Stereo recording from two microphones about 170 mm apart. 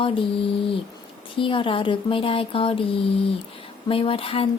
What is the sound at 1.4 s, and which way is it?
Speech, 30° left (ahead or behind).